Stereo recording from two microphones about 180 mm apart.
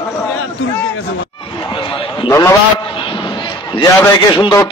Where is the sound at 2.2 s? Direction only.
15° left (ahead or behind).